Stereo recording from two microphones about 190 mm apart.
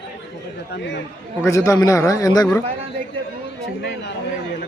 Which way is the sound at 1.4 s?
15° left (ahead or behind).